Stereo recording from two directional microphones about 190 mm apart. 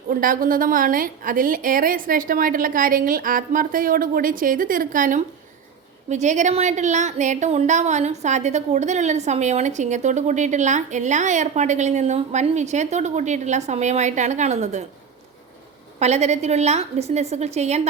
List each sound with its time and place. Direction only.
0.1 s a woman's voice: 45° right (ahead or behind)
16.0 s a woman's voice: 35° right (ahead or behind)